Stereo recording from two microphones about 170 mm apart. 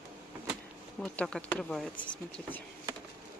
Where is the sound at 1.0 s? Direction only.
5° left (ahead or behind).